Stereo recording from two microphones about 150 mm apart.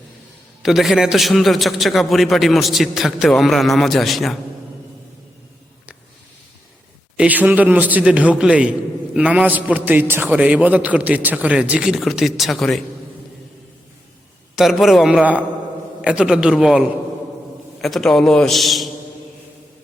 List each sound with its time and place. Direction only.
0.6 s a man's voice: centre (ahead or behind)
7.2 s a man's voice: 10° right (ahead or behind)
14.5 s a man's voice: centre (ahead or behind)